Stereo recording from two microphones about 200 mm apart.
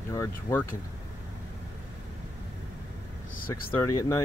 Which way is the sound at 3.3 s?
45° left (ahead or behind).